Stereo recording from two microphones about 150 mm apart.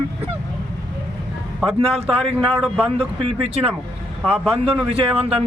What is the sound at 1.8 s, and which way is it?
A man's voice, 40° right (ahead or behind).